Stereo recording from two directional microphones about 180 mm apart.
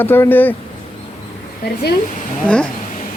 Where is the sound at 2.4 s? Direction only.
5° left (ahead or behind).